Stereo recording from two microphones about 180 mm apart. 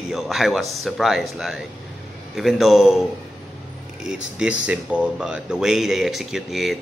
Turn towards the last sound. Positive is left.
turn(degrees=0)  # may be behind; listen again after turning